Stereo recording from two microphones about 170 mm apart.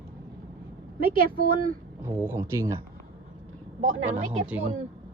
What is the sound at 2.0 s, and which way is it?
Speech, 15° right (ahead or behind).